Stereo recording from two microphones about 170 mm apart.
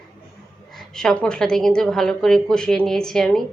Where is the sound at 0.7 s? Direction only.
5° left (ahead or behind).